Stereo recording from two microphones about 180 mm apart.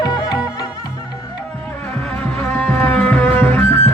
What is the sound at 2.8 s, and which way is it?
Music, 10° left (ahead or behind).